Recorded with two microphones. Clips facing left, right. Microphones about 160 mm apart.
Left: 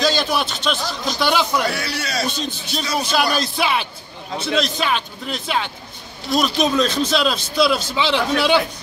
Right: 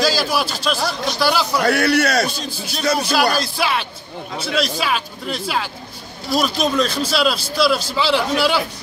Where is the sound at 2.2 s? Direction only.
5° right (ahead or behind).